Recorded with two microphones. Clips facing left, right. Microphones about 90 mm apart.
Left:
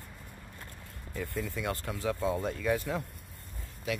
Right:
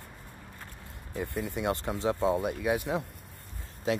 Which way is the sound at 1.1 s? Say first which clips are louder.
Right 3 dB; 20° right (ahead or behind).